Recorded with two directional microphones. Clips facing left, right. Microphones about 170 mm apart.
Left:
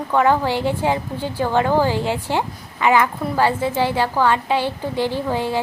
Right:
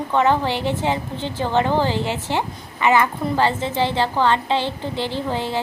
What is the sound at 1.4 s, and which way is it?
Speech, 20° right (ahead or behind).